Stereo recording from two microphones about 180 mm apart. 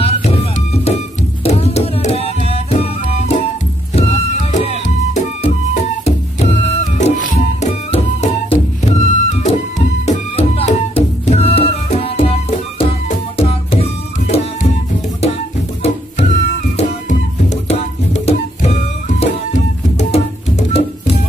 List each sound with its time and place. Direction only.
0.0 s music: 35° left (ahead or behind)
1.4 s music: 35° left (ahead or behind)
15.8 s music: 35° left (ahead or behind)